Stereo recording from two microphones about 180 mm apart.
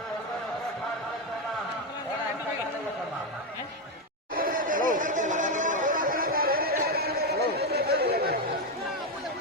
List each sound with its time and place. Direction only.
4.4 s chatter: 50° right (ahead or behind)